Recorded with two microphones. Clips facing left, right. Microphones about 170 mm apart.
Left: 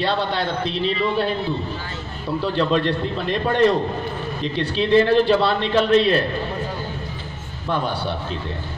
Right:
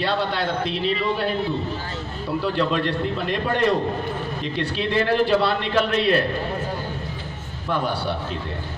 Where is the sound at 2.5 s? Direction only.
30° left (ahead or behind).